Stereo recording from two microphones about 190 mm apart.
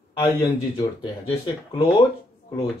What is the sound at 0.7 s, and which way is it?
Speech, 25° left (ahead or behind).